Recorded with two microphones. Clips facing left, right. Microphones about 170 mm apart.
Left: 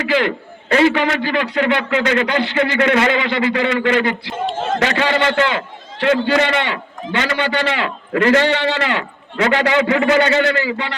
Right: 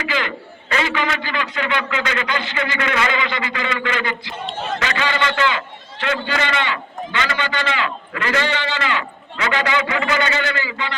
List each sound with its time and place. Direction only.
0.0 s a man's voice: 60° left (ahead or behind)
4.5 s a sound: 50° left (ahead or behind)
5.2 s a man's voice: 50° left (ahead or behind)
7.8 s a man's voice: 45° left (ahead or behind); by 9.0 s 60° left (ahead or behind)
9.8 s a man's voice: 45° left (ahead or behind); by 10.8 s 60° left (ahead or behind)